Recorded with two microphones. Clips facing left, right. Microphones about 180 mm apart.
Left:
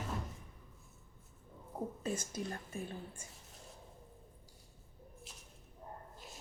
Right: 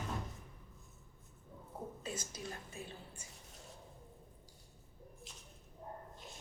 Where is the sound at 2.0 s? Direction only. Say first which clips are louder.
Left 7 dB; 50° left (ahead or behind).